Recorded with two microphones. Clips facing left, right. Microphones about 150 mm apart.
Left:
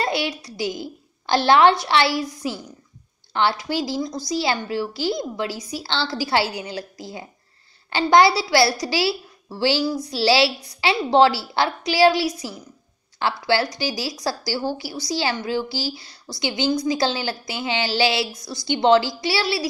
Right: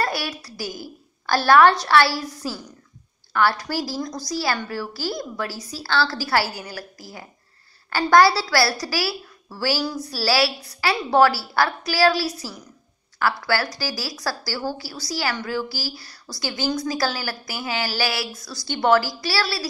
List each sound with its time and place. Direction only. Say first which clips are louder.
0.0 s a woman's voice: left 2 dB; 20° left (ahead or behind)